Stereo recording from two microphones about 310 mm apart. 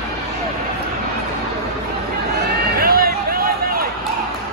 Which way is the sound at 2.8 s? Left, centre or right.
Right.